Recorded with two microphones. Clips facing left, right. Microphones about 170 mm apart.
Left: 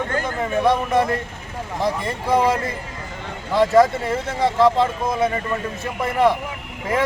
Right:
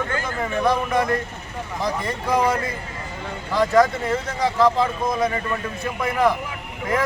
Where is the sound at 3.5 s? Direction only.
25° left (ahead or behind).